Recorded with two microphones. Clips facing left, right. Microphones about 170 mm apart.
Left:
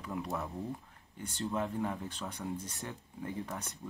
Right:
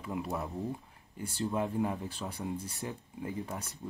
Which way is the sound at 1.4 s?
15° right (ahead or behind).